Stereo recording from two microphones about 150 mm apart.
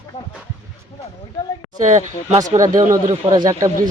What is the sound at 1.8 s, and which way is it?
Speech, 50° right (ahead or behind).